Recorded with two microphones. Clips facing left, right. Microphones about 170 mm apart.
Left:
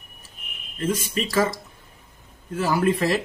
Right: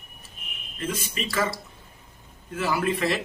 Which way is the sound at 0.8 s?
40° left (ahead or behind).